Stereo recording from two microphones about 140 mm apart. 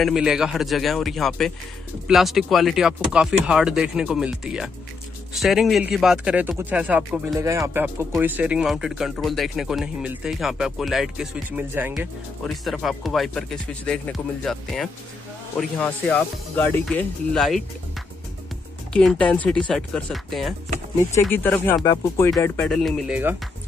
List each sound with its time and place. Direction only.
0.0 s speech: 5° right (ahead or behind)
7.3 s speech: 20° right (ahead or behind); by 17.6 s centre (ahead or behind)
18.9 s speech: 10° left (ahead or behind)
21.1 s speech: 15° left (ahead or behind)
22.7 s speech: 5° left (ahead or behind)